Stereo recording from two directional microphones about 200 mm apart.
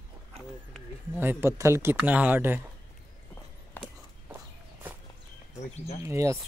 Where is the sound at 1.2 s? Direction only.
10° right (ahead or behind).